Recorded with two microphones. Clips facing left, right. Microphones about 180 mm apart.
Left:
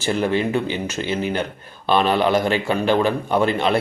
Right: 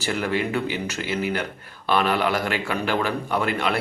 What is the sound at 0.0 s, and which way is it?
Speech, 25° left (ahead or behind).